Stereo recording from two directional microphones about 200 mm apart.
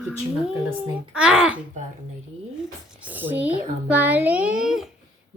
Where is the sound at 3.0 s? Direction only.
10° right (ahead or behind).